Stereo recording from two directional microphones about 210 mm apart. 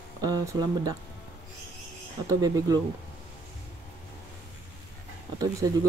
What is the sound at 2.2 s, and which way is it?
Speech, 15° right (ahead or behind).